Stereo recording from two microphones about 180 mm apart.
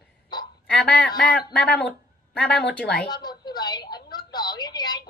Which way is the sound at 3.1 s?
25° left (ahead or behind).